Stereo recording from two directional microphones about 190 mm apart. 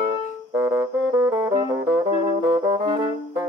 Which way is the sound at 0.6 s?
10° right (ahead or behind).